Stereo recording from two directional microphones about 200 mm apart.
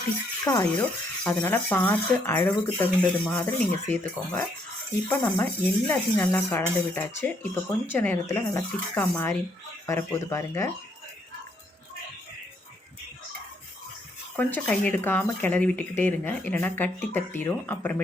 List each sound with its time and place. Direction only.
0.4 s speech: 15° left (ahead or behind)
14.3 s speech: 5° left (ahead or behind)